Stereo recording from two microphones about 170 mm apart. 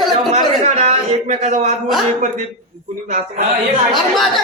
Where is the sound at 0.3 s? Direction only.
40° right (ahead or behind).